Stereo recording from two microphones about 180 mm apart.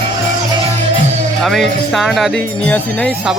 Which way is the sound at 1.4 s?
Centre (ahead or behind).